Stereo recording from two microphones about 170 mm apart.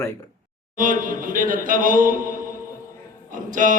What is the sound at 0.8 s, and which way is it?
Speech, 50° right (ahead or behind).